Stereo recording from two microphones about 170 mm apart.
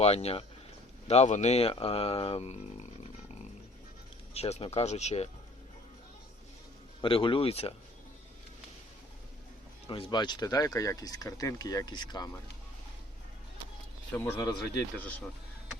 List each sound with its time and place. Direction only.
0.0 s speech: 35° left (ahead or behind)
4.4 s speech: 40° left (ahead or behind)
7.0 s speech: 30° left (ahead or behind)
9.8 s speech: 35° left (ahead or behind)
14.2 s speech: 15° left (ahead or behind)